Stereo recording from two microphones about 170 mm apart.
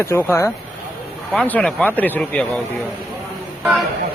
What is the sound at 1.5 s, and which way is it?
A man's voice, 5° left (ahead or behind).